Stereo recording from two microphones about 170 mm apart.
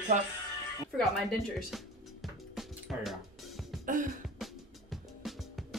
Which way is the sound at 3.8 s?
50° right (ahead or behind).